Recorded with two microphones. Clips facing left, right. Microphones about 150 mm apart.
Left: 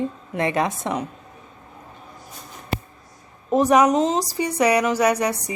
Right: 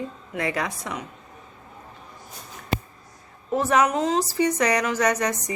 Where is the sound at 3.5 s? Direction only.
15° left (ahead or behind).